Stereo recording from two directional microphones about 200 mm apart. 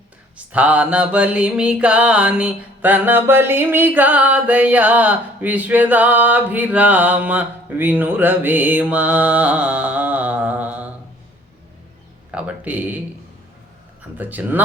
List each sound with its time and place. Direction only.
0.3 s music: 5° right (ahead or behind)
12.3 s music: 5° right (ahead or behind)
14.2 s music: 10° right (ahead or behind)